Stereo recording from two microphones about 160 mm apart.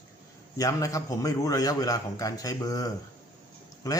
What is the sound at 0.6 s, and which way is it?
Speech, 20° left (ahead or behind).